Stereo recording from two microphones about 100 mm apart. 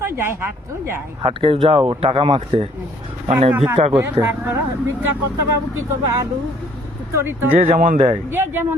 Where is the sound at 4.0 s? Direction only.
30° right (ahead or behind).